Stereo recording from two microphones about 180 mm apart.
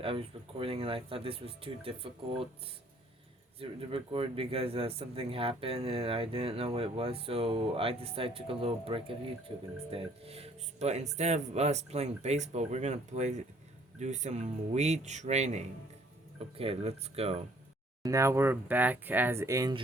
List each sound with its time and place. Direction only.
0.0 s speech: 30° right (ahead or behind)
3.6 s speech: 30° right (ahead or behind)
18.0 s speech: 15° right (ahead or behind)